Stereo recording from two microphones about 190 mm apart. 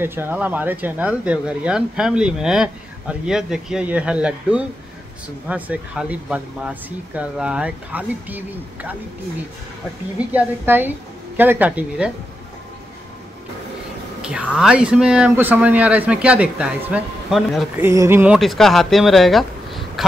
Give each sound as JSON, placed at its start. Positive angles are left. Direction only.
{"t": 0.0, "sound": "speech", "side_deg": -10}
{"t": 10.1, "sound": "speech", "side_deg": -10}
{"t": 14.2, "sound": "speech", "side_deg": -5}
{"t": 17.8, "sound": "speech", "side_deg": -15}